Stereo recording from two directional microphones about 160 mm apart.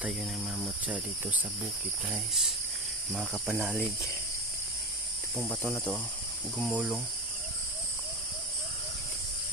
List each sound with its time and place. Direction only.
0.6 s speech: 10° right (ahead or behind)
3.4 s speech: 10° right (ahead or behind)
5.4 s cricket: 10° left (ahead or behind)
5.7 s speech: centre (ahead or behind)